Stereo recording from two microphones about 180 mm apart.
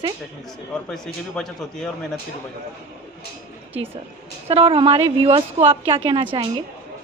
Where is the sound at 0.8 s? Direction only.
5° left (ahead or behind).